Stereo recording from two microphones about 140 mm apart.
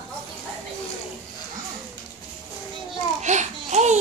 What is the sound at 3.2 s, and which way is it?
Babbling, 55° right (ahead or behind).